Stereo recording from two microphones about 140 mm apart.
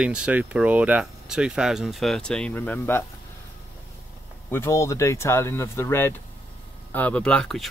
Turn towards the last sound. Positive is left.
turn(degrees=5)  # may be behind; listen again after turning